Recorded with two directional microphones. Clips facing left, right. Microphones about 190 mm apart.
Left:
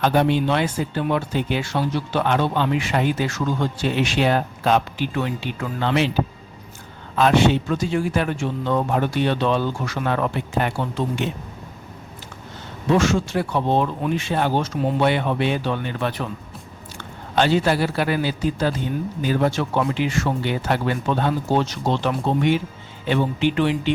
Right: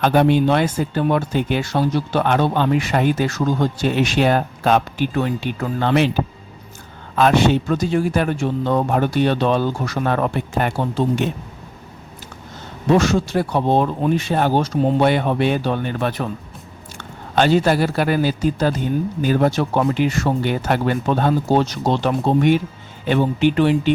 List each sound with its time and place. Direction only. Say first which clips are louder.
0.0 s speech: right 4 dB; 55° right (ahead or behind)
7.2 s speech: right 2 dB; 45° right (ahead or behind)
12.9 s speech: right 3 dB; 35° right (ahead or behind)
17.3 s speech: right 3 dB; 45° right (ahead or behind)